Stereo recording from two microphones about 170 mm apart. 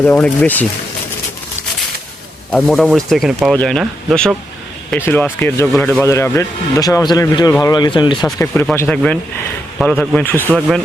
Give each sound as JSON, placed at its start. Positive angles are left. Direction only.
{"t": 0.0, "sound": "speech", "side_deg": 10}
{"t": 2.5, "sound": "speech", "side_deg": 5}